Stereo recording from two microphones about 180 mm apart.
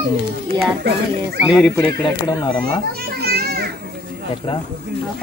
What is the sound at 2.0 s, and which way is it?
Speech, 25° left (ahead or behind).